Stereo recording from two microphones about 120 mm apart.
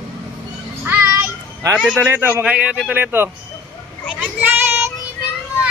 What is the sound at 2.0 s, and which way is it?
A man's voice, 15° right (ahead or behind).